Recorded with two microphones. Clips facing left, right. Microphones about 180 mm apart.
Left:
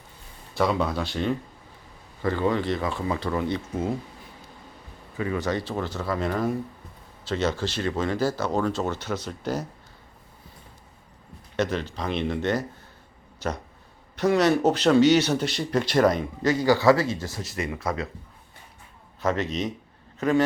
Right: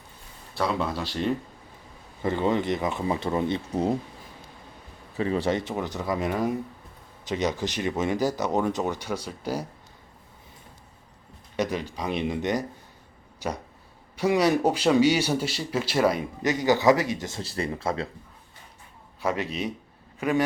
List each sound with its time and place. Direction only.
0.5 s speech: centre (ahead or behind)
2.2 s speech: 20° right (ahead or behind)
3.7 s speech: 35° right (ahead or behind)
5.1 s speech: 30° right (ahead or behind); by 9.6 s 10° right (ahead or behind)
11.5 s speech: 10° right (ahead or behind); by 18.1 s 30° right (ahead or behind)
19.2 s a man's voice: 10° right (ahead or behind)